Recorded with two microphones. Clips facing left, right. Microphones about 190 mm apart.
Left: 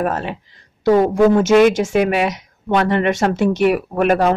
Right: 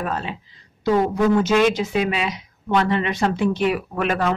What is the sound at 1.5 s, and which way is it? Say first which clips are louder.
Speech: left 6 dB; 45° left (ahead or behind).